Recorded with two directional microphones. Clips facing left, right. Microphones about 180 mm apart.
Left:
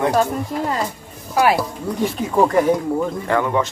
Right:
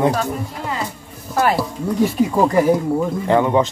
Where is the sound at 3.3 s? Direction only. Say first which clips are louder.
Right 5 dB; 20° right (ahead or behind).